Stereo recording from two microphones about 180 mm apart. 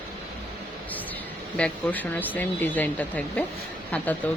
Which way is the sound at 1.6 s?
10° left (ahead or behind).